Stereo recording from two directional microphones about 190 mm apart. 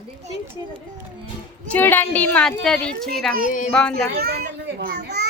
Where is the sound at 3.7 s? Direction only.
5° left (ahead or behind).